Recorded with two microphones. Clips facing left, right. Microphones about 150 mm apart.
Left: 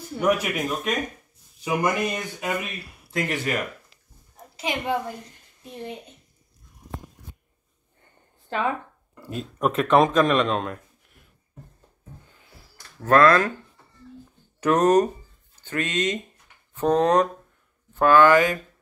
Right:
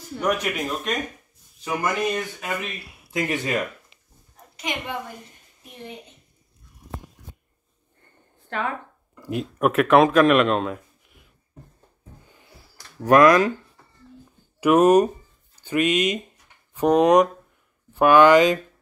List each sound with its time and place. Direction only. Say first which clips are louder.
0.1 s speech: left 2 dB; 5° left (ahead or behind)
2.8 s a sound: left 2 dB; centre (ahead or behind)
3.1 s speech: right 1 dB; 15° right (ahead or behind)
9.3 s speech: right 3 dB; 10° right (ahead or behind)
13.0 s speech: right 2 dB; 15° right (ahead or behind)
14.6 s speech: right 3 dB; 10° right (ahead or behind)